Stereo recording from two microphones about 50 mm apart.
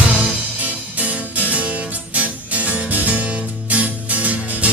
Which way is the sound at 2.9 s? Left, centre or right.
Right.